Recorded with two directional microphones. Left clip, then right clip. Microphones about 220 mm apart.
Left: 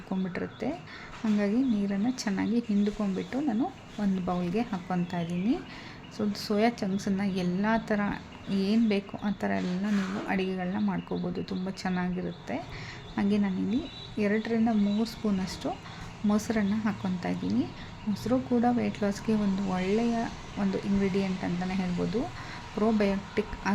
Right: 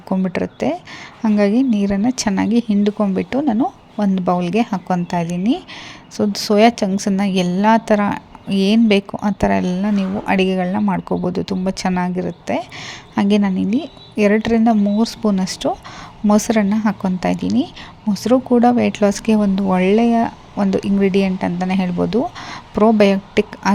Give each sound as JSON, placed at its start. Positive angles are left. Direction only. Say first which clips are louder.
{"t": 0.1, "sound": "a woman's voice", "louder": "right 14 dB", "side_deg": -35}